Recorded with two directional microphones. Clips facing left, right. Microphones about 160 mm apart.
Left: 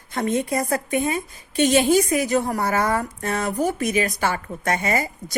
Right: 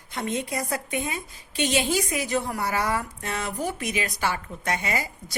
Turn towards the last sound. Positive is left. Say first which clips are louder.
# left 6 dB
turn(degrees=50)  # may be behind; listen again after turning